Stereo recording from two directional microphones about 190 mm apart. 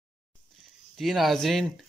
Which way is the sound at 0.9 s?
Centre (ahead or behind).